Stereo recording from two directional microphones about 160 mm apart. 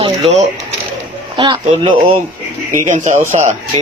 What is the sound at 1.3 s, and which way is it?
Speech, 30° right (ahead or behind).